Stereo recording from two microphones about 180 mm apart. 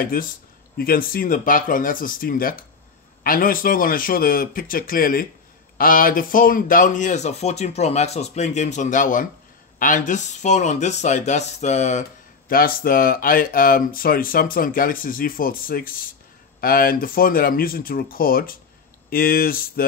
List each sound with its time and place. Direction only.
0.0 s speech: 50° left (ahead or behind)
12.4 s speech: 55° left (ahead or behind)